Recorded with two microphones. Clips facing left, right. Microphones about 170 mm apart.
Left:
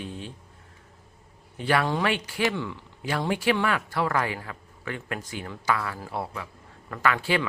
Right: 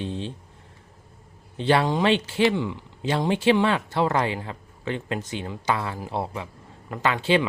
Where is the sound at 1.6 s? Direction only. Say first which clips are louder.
Right 4 dB; 25° right (ahead or behind).